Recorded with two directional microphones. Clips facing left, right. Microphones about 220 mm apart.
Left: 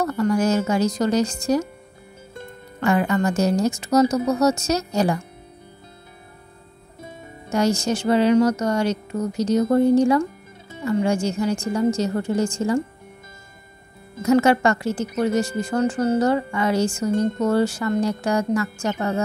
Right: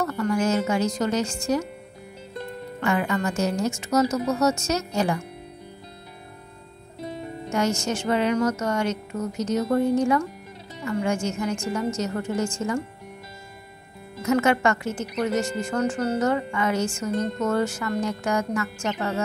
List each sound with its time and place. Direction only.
0.0 s a woman's voice: 35° left (ahead or behind)
2.8 s a woman's voice: 40° left (ahead or behind)
7.4 s a woman's voice: 35° left (ahead or behind)
14.2 s a woman's voice: 35° left (ahead or behind)